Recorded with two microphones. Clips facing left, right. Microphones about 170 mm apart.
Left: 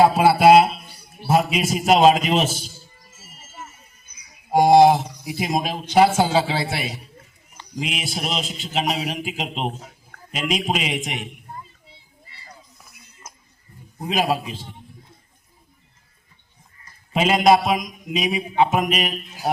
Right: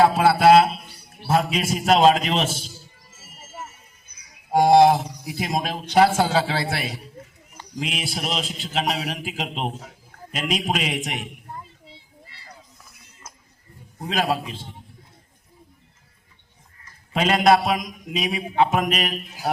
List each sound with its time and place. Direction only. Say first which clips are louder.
0.0 s a sound: left 2 dB; 15° left (ahead or behind)
1.3 s a man's voice: left 2 dB; 10° left (ahead or behind)
4.5 s speech: left 2 dB; centre (ahead or behind)
11.9 s a sound: right 4 dB; 85° right
14.0 s speech: left 2 dB; 10° left (ahead or behind)
17.1 s speech: left 1 dB; 5° left (ahead or behind)